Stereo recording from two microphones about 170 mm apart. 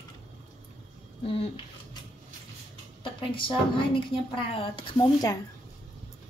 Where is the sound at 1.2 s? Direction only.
35° left (ahead or behind).